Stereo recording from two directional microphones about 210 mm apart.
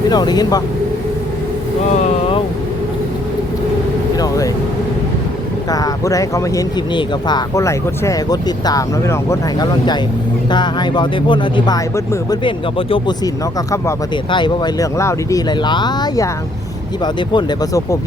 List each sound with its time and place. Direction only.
0.1 s speech: 20° left (ahead or behind)
2.0 s vehicle: 25° left (ahead or behind)
5.7 s speech: 15° left (ahead or behind)